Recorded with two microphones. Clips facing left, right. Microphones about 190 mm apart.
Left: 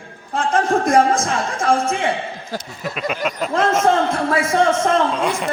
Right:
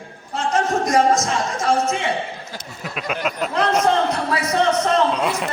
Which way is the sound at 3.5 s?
45° left (ahead or behind).